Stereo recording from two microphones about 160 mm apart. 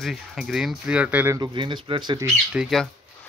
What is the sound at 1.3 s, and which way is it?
Speech, 25° right (ahead or behind).